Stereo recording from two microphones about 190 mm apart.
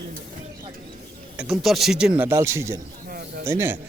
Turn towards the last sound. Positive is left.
turn(degrees=-10)  # may be behind; listen again after turning